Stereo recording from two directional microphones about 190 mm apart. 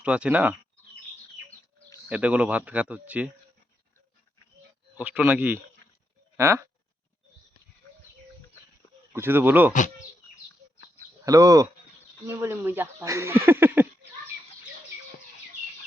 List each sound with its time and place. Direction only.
0.0 s speech: 5° right (ahead or behind)
2.0 s speech: 5° right (ahead or behind)
4.9 s speech: 10° right (ahead or behind)
6.3 s a sound: 15° right (ahead or behind)
9.1 s speech: 10° right (ahead or behind)
11.3 s speech: 20° right (ahead or behind)